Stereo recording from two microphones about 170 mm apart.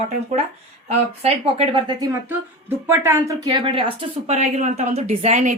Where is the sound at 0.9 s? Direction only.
40° right (ahead or behind).